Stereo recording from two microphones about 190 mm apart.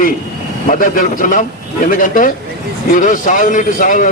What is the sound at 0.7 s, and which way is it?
Speech, 45° left (ahead or behind).